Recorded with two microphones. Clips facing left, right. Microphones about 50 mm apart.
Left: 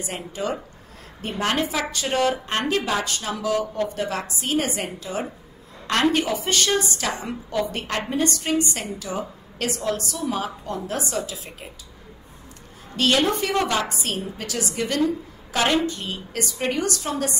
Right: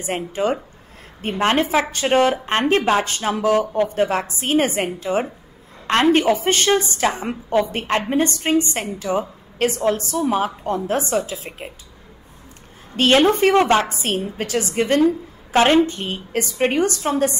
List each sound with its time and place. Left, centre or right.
0.0 s a woman's voice: right
12.9 s a woman's voice: right